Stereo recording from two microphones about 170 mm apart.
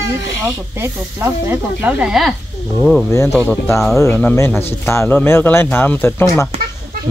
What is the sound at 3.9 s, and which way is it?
Speech, 15° left (ahead or behind).